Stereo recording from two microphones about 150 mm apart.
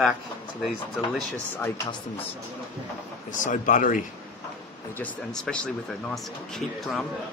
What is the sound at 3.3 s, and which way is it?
Speech, 60° left (ahead or behind).